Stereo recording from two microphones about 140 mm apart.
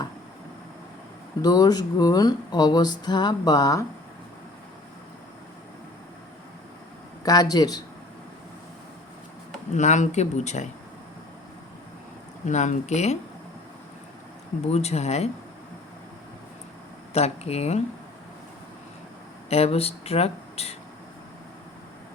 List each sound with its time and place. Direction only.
1.4 s speech: 30° left (ahead or behind)
7.3 s speech: 30° left (ahead or behind)
9.7 s speech: 55° left (ahead or behind)
12.5 s speech: 60° left (ahead or behind)
14.7 s speech: 50° left (ahead or behind)
17.2 s speech: 50° left (ahead or behind)
19.5 s speech: 45° left (ahead or behind)